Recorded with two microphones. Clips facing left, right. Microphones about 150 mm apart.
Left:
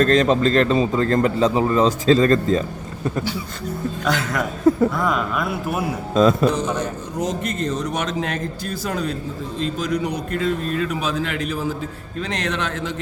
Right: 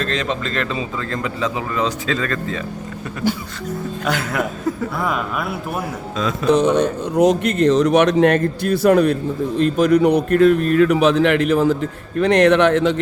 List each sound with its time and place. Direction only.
0.0 s a man's voice: 40° left (ahead or behind)
4.0 s speech: 10° right (ahead or behind)
6.5 s a man's voice: 65° right (ahead or behind)